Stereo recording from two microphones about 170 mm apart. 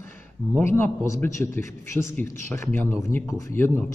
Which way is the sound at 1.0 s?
15° left (ahead or behind).